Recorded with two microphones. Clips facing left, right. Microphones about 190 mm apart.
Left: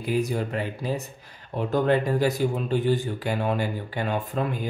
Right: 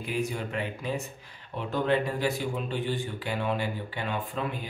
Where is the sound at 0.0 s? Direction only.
40° left (ahead or behind).